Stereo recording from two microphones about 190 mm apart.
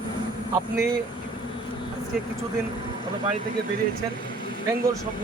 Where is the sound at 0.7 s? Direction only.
55° right (ahead or behind).